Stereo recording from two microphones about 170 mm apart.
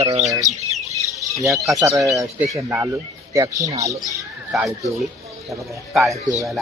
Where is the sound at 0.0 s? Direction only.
40° right (ahead or behind).